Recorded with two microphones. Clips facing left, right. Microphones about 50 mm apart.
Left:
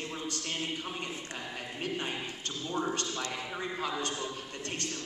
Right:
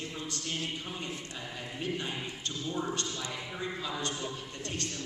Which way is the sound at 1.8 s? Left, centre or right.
Left.